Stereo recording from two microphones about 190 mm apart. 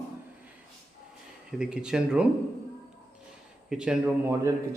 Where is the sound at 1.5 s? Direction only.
5° right (ahead or behind).